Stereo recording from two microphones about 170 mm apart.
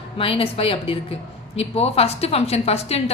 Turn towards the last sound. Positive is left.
turn(degrees=40)  # may be behind; listen again after turning